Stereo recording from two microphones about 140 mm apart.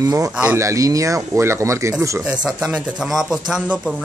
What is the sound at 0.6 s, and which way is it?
Speech, 20° right (ahead or behind).